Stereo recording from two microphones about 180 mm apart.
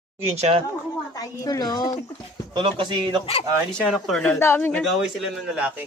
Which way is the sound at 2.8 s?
25° right (ahead or behind).